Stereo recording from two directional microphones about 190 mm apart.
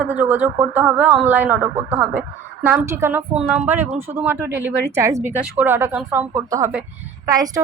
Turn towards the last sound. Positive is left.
turn(degrees=-20)  # may be behind; listen again after turning